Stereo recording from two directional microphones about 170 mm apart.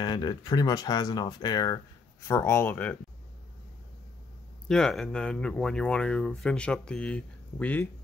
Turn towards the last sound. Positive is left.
turn(degrees=10)  # may be behind; listen again after turning